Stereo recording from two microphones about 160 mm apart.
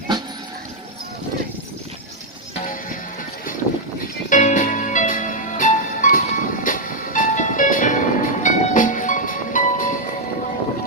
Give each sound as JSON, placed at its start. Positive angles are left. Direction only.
{"t": 4.3, "sound": "music", "side_deg": 50}